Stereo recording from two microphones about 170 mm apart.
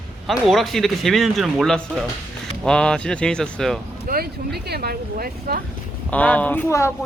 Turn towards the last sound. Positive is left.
turn(degrees=15)  # may be behind; listen again after turning